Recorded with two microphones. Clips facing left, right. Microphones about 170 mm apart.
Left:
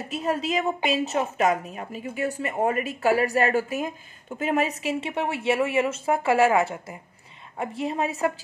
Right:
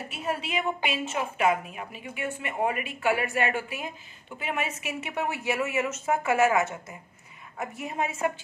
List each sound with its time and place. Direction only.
0.1 s speech: 35° left (ahead or behind)